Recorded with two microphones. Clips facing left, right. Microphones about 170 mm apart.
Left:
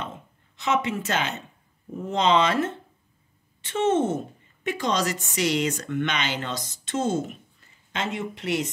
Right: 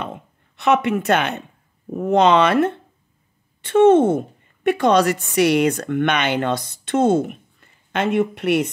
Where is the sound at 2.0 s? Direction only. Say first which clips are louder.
Right 7 dB; 60° right (ahead or behind).